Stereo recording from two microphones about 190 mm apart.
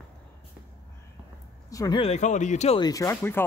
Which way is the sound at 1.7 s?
15° left (ahead or behind).